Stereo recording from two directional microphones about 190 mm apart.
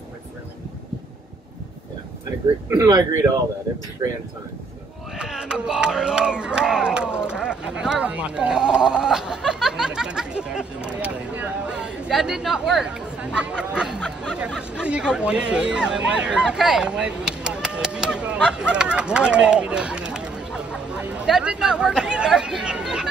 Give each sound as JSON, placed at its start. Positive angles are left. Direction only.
{"t": 2.8, "sound": "speech", "side_deg": -20}
{"t": 5.1, "sound": "battle cry", "side_deg": -5}
{"t": 15.5, "sound": "speech", "side_deg": -5}